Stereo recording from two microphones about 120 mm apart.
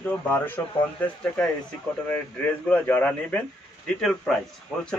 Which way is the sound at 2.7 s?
10° left (ahead or behind).